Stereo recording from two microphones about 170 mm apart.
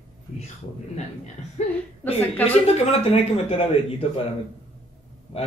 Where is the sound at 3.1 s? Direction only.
35° left (ahead or behind).